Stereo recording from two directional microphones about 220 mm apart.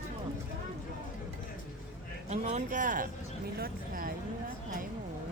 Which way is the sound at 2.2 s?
35° right (ahead or behind).